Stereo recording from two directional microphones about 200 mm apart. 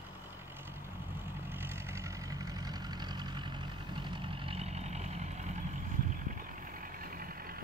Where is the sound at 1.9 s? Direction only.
15° right (ahead or behind); by 5.3 s 35° right (ahead or behind).